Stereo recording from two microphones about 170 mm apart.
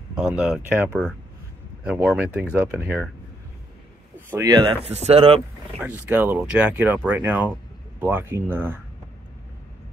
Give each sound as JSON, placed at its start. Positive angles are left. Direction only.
{"t": 0.1, "sound": "speech", "side_deg": -5}
{"t": 4.3, "sound": "speech", "side_deg": -20}
{"t": 4.8, "sound": "speech", "side_deg": -40}
{"t": 5.8, "sound": "speech", "side_deg": -10}